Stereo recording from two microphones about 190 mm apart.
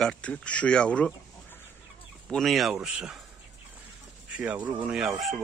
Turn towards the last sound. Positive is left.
turn(degrees=0)  # may be behind; listen again after turning